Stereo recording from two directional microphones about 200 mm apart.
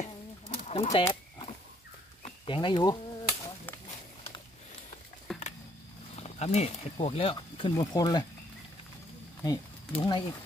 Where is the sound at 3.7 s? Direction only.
10° left (ahead or behind).